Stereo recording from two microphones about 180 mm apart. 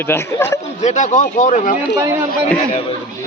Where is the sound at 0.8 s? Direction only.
40° left (ahead or behind).